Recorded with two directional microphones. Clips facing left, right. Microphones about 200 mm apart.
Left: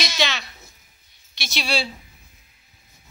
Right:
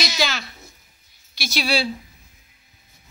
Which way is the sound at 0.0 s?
Centre (ahead or behind).